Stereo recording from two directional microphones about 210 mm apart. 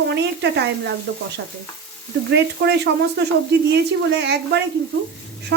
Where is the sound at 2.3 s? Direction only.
55° right (ahead or behind).